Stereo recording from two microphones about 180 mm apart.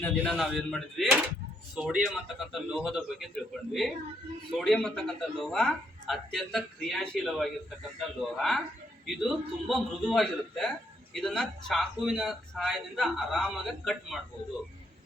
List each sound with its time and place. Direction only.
0.0 s a man's voice: 5° left (ahead or behind)